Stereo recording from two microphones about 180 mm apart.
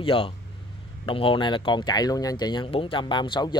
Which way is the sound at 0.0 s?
30° left (ahead or behind).